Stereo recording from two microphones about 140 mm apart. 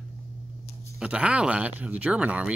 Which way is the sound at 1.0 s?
10° right (ahead or behind).